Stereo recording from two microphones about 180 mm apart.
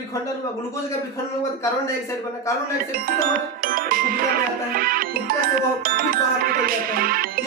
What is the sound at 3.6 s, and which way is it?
Music, 55° right (ahead or behind).